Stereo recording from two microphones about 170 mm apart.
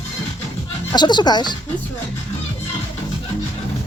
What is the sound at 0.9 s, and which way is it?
Speech, 25° left (ahead or behind).